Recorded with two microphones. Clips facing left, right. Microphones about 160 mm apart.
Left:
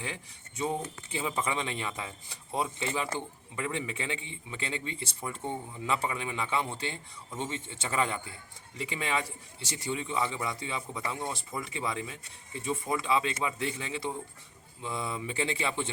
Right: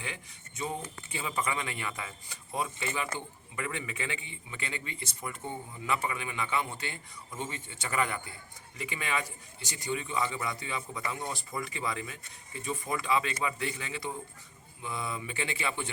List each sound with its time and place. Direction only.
0.0 s a man's voice: 30° left (ahead or behind)